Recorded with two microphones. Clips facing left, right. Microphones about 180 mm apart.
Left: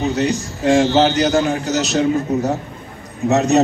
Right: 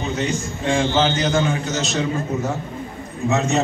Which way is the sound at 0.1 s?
40° left (ahead or behind).